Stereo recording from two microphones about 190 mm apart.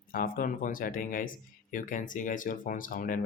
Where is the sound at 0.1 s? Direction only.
45° left (ahead or behind).